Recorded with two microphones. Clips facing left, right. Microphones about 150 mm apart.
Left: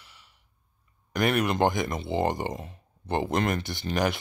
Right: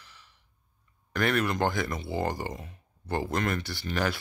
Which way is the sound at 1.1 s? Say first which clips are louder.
Left 2 dB; 15° left (ahead or behind).